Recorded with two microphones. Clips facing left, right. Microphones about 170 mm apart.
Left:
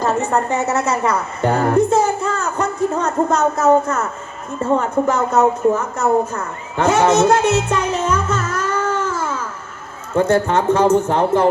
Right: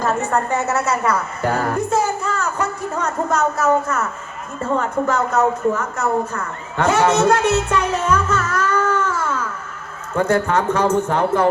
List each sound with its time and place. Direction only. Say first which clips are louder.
0.0 s a woman's voice: left 2 dB; 25° left (ahead or behind)